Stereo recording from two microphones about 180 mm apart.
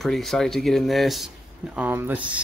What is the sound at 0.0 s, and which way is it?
Speech, centre (ahead or behind).